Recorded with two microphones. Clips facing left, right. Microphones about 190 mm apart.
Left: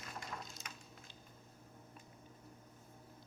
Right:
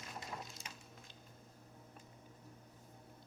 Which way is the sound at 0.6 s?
30° right (ahead or behind).